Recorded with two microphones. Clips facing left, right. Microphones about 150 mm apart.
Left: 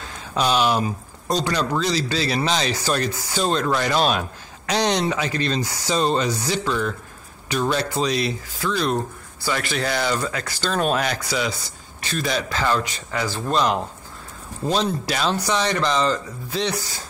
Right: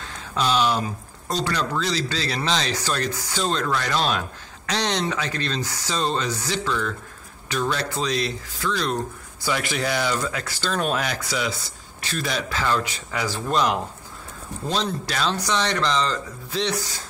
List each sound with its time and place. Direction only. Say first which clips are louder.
0.3 s speech: left 2 dB; 15° left (ahead or behind)
9.4 s speech: left 1 dB; 15° right (ahead or behind)
14.7 s speech: left 4 dB; 10° left (ahead or behind)